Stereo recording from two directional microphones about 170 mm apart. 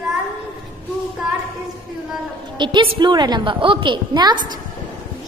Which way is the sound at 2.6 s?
30° right (ahead or behind).